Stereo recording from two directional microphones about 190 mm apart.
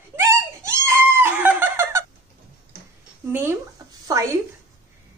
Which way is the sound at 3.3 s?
10° right (ahead or behind).